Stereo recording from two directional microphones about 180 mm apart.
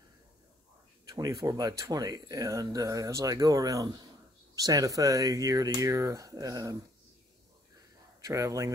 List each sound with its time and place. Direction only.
1.0 s speech: 20° right (ahead or behind)
8.2 s speech: 20° right (ahead or behind)